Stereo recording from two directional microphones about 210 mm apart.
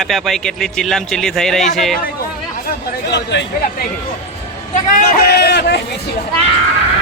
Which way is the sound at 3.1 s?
55° left (ahead or behind).